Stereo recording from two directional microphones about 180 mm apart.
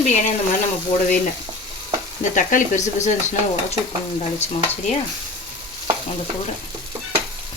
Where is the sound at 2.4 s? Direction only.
45° left (ahead or behind).